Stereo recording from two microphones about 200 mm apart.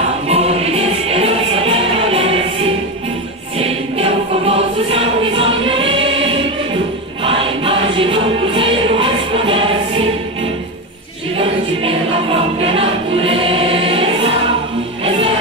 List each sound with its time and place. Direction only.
0.3 s music: 30° right (ahead or behind)
3.5 s choir: 30° right (ahead or behind)
7.2 s music: 25° right (ahead or behind)
11.3 s music: 30° right (ahead or behind)